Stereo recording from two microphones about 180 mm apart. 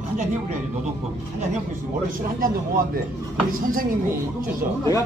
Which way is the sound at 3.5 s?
55° right (ahead or behind).